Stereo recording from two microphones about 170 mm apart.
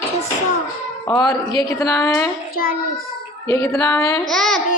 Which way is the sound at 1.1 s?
20° left (ahead or behind).